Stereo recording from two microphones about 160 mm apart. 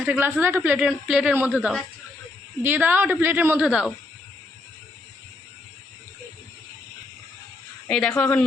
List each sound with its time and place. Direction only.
0.0 s speech: 10° right (ahead or behind)
7.9 s speech: 5° left (ahead or behind)